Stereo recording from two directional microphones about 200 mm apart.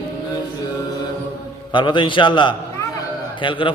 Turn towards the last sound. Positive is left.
turn(degrees=25)  # may be behind; listen again after turning